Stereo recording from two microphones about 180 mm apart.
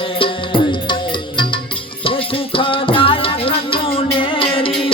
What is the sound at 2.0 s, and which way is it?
Music, 30° left (ahead or behind).